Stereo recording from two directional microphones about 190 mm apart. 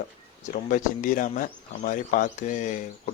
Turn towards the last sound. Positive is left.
turn(degrees=40)  # may be behind; listen again after turning